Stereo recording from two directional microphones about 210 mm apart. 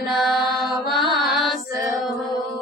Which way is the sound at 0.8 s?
Centre (ahead or behind).